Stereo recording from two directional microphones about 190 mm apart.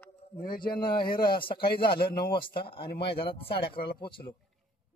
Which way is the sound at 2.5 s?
25° left (ahead or behind).